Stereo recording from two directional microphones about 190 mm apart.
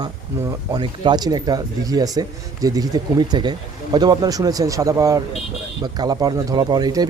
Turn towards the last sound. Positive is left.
turn(degrees=-20)  # may be behind; listen again after turning